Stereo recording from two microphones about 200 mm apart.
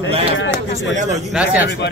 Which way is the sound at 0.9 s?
35° right (ahead or behind).